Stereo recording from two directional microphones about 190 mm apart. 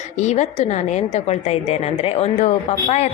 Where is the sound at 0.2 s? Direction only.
35° left (ahead or behind).